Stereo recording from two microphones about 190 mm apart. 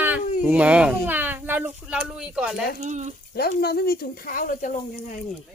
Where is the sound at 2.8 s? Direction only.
40° right (ahead or behind).